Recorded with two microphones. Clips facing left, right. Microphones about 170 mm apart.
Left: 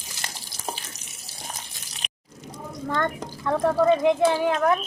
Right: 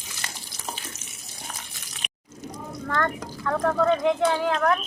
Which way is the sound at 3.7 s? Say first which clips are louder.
Left 3 dB; 10° left (ahead or behind).